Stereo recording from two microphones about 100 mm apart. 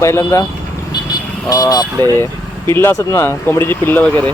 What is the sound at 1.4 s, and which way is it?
Speech, 40° left (ahead or behind).